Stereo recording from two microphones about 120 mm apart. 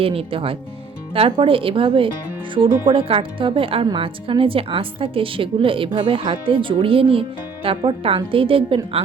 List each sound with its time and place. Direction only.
0.0 s a woman's voice: 50° right (ahead or behind)